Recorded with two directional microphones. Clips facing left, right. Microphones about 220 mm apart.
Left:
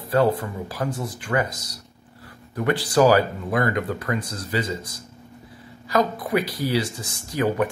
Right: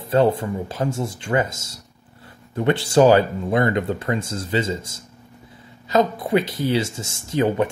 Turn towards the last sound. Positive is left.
turn(degrees=-25)  # may be behind; listen again after turning